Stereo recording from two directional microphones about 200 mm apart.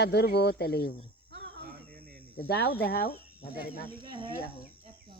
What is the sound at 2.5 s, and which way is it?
Speech, 50° left (ahead or behind).